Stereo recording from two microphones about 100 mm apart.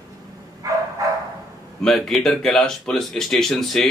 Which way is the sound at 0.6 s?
35° right (ahead or behind).